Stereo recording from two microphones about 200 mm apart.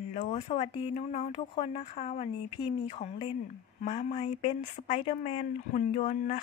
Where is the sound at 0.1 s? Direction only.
40° left (ahead or behind).